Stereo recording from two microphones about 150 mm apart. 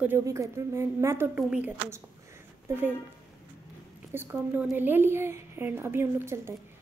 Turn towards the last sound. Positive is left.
turn(degrees=-15)  # may be behind; listen again after turning